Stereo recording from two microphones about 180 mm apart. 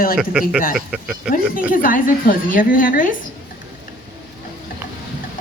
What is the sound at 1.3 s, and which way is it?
A woman's voice, 50° left (ahead or behind).